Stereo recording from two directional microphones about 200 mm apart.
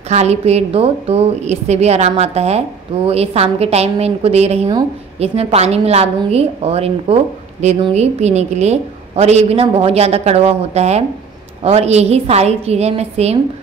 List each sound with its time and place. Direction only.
0.1 s a woman's voice: 35° right (ahead or behind)